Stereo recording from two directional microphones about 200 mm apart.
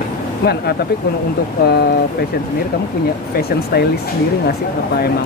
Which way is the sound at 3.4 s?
50° left (ahead or behind).